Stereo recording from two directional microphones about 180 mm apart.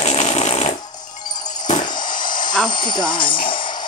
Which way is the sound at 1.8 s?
25° left (ahead or behind).